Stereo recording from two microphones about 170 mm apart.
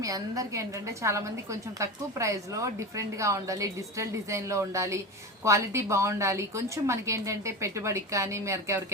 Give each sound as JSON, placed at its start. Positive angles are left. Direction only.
{"t": 0.0, "sound": "a woman's voice", "side_deg": -20}